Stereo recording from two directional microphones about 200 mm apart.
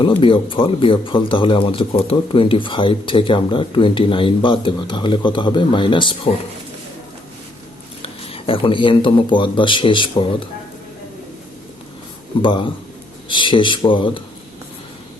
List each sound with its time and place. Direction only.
0.2 s speech: 25° left (ahead or behind)
8.0 s speech: 30° left (ahead or behind)
12.4 s speech: 25° left (ahead or behind)